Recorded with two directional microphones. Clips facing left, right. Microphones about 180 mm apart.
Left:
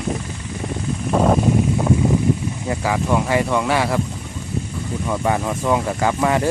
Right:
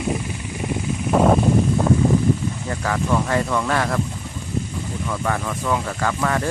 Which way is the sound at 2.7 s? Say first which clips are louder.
Left 3 dB; 10° left (ahead or behind).